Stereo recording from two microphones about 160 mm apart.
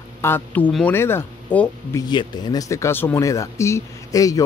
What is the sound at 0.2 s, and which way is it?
Speech, 10° left (ahead or behind).